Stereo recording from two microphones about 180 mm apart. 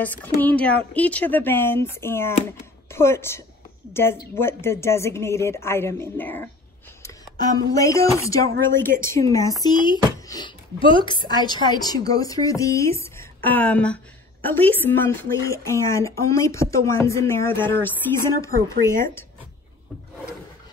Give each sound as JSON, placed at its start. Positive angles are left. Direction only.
{"t": 0.0, "sound": "a woman's voice", "side_deg": 10}